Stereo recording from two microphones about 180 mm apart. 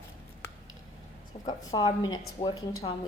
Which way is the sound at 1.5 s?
25° left (ahead or behind).